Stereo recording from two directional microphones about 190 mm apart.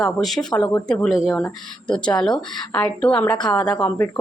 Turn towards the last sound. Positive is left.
turn(degrees=10)  # may be behind; listen again after turning